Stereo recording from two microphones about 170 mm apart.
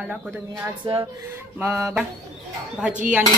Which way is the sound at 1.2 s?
15° right (ahead or behind).